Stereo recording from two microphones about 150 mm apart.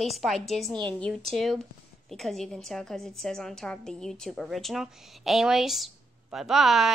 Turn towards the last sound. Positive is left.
turn(degrees=0)  # may be behind; listen again after turning